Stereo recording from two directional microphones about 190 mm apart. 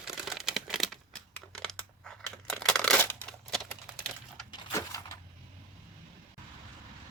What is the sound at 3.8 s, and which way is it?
Crack, centre (ahead or behind).